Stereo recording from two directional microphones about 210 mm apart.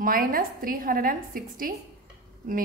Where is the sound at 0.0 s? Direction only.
45° right (ahead or behind).